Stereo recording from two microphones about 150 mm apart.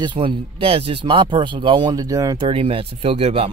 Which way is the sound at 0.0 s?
35° right (ahead or behind).